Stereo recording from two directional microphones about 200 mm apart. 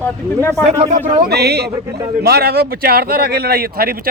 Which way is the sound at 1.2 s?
55° right (ahead or behind).